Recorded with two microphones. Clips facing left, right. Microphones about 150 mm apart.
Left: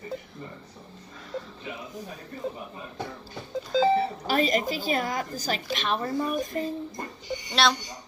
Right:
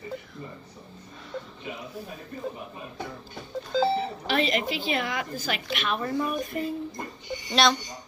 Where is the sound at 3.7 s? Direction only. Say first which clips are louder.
Left 2 dB; centre (ahead or behind).